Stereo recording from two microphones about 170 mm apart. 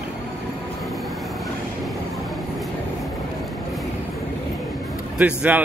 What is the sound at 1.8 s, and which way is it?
Train, centre (ahead or behind).